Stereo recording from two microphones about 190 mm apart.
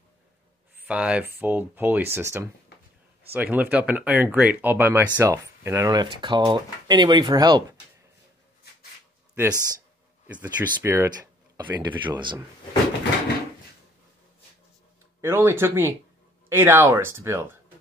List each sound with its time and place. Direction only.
0.8 s speech: 5° right (ahead or behind); by 7.6 s 20° right (ahead or behind)
9.3 s a man's voice: 15° right (ahead or behind)
15.2 s speech: 10° right (ahead or behind)